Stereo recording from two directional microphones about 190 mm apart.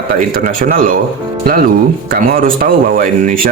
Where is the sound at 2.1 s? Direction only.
50° right (ahead or behind).